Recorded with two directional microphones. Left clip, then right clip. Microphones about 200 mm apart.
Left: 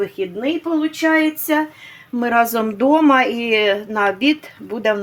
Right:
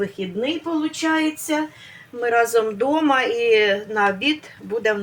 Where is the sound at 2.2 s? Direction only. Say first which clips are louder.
Left 1 dB; 60° left (ahead or behind).